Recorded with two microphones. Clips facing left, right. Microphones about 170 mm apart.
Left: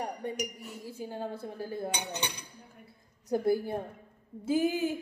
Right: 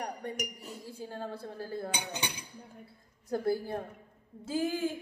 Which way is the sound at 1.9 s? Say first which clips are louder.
Left 2 dB; 10° right (ahead or behind).